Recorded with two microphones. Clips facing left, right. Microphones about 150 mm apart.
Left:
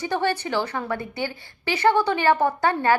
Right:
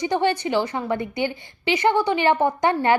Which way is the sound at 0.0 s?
15° right (ahead or behind).